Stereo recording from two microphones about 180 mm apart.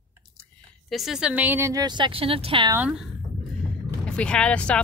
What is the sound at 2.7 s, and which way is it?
Speech, 5° right (ahead or behind).